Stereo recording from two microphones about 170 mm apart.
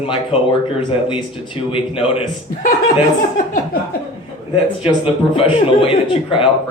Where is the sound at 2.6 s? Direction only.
55° left (ahead or behind).